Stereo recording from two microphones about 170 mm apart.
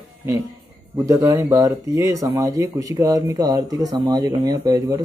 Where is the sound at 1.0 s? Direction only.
20° right (ahead or behind).